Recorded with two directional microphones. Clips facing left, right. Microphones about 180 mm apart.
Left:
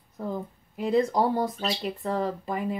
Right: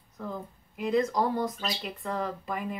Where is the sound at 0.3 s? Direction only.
30° left (ahead or behind).